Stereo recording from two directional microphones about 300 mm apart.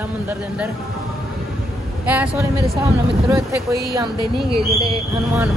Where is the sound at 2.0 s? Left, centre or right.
Centre.